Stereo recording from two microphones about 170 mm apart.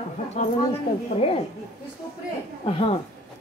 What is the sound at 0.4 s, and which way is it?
Speech, 45° left (ahead or behind).